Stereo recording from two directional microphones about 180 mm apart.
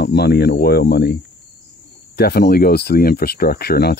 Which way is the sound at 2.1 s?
60° left (ahead or behind).